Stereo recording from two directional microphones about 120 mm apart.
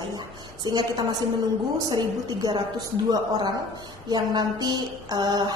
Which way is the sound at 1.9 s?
30° right (ahead or behind).